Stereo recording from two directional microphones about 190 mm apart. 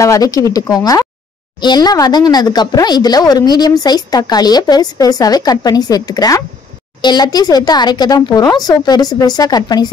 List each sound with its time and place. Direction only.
0.0 s speech: 15° left (ahead or behind)